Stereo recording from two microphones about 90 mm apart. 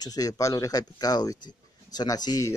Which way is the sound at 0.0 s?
45° left (ahead or behind).